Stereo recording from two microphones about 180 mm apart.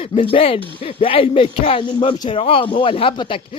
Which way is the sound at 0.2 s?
30° left (ahead or behind).